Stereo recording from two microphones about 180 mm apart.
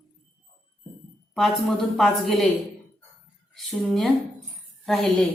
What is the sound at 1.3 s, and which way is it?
A woman's voice, centre (ahead or behind).